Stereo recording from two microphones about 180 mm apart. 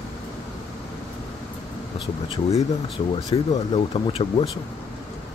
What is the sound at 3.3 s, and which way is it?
Speech, 25° left (ahead or behind).